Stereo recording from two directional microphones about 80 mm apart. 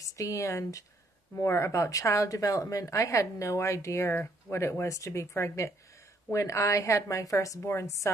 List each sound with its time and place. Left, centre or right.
0.0 s speech: left